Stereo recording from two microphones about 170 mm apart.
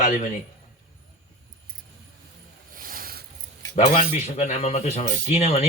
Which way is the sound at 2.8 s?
55° right (ahead or behind).